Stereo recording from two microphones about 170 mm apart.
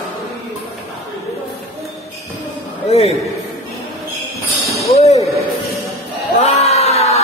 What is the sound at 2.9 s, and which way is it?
Speech, 40° left (ahead or behind).